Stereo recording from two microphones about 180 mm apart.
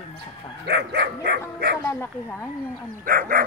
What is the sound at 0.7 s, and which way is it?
Speech, 65° right (ahead or behind).